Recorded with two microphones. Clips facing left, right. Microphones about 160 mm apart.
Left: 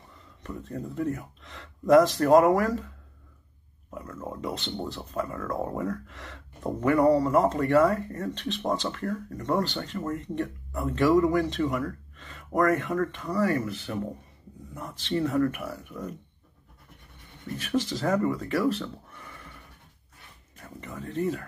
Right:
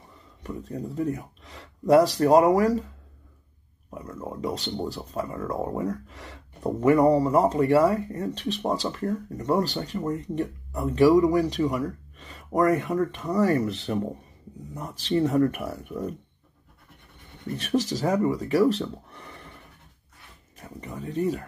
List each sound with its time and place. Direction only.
0.4 s speech: 15° right (ahead or behind)
3.9 s speech: 15° right (ahead or behind)
17.6 s speech: 20° right (ahead or behind)
20.5 s speech: 15° right (ahead or behind)